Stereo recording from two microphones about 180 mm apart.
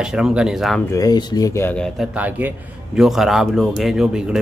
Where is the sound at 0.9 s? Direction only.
20° left (ahead or behind); by 2.1 s 5° left (ahead or behind).